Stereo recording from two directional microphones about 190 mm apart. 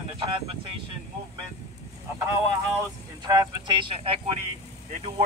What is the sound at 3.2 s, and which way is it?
Speech, 25° right (ahead or behind).